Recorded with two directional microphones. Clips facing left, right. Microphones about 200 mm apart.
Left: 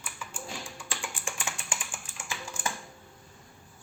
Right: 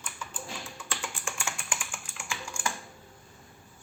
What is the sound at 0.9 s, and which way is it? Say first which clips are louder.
Typing: right 1 dB; 15° left (ahead or behind).